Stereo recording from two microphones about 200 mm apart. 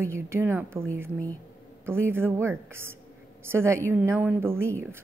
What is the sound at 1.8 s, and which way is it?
A woman's voice, 10° right (ahead or behind).